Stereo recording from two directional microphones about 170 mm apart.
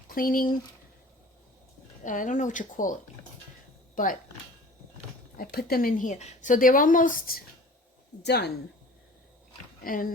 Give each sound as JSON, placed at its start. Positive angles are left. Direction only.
{"t": 0.1, "sound": "speech", "side_deg": 55}
{"t": 2.0, "sound": "a woman's voice", "side_deg": 50}
{"t": 5.4, "sound": "a woman's voice", "side_deg": 65}
{"t": 8.2, "sound": "speech", "side_deg": 80}
{"t": 9.8, "sound": "speech", "side_deg": 55}